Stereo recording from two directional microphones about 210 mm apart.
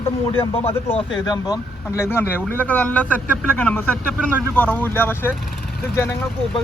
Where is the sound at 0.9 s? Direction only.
20° left (ahead or behind).